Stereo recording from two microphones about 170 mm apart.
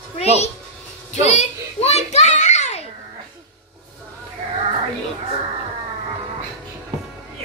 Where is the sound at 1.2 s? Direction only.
40° left (ahead or behind).